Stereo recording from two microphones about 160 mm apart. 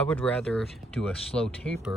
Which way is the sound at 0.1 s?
10° left (ahead or behind).